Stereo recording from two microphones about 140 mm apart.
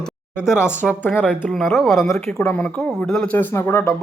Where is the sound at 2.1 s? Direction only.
15° left (ahead or behind).